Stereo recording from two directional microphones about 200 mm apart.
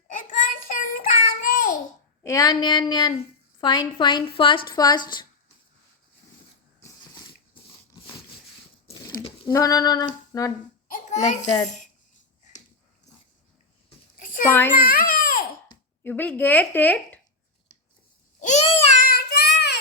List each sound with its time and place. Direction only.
0.1 s child singing: 40° left (ahead or behind)
2.2 s a woman's voice: 15° left (ahead or behind)
6.8 s a sound: 15° left (ahead or behind)
7.6 s biting: 25° left (ahead or behind)
8.9 s a sound: 25° left (ahead or behind)
10.3 s a woman's voice: 20° left (ahead or behind)
10.8 s a sound: 40° left (ahead or behind)
14.8 s baby cry: 45° left (ahead or behind)
16.0 s a woman's voice: 10° left (ahead or behind)
18.3 s child singing: 35° left (ahead or behind); by 19.7 s 55° left (ahead or behind)